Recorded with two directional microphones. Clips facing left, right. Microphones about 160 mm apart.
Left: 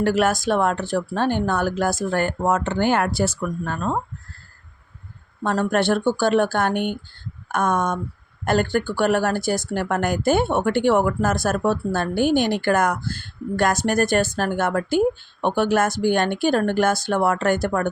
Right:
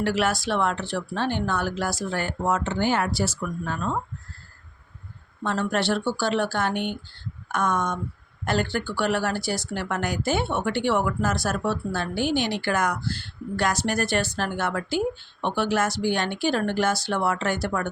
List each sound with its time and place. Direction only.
0.0 s speech: 45° left (ahead or behind)
5.4 s speech: 50° left (ahead or behind)